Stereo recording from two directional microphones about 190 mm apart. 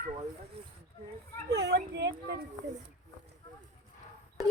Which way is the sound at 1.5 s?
60° right (ahead or behind).